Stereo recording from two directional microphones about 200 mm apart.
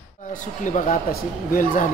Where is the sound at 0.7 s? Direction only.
40° left (ahead or behind).